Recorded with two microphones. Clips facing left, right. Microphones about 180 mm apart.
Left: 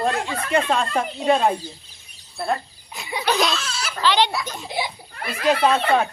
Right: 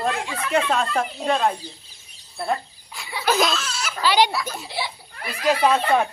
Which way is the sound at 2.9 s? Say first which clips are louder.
Left 4 dB; 20° left (ahead or behind).